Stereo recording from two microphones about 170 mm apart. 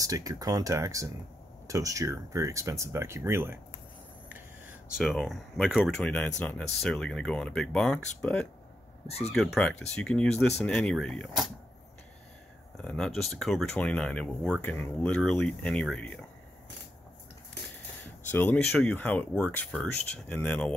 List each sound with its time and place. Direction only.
0.0 s speech: 20° right (ahead or behind)
4.9 s speech: centre (ahead or behind)
12.7 s speech: 5° left (ahead or behind)
18.0 s speech: 10° left (ahead or behind)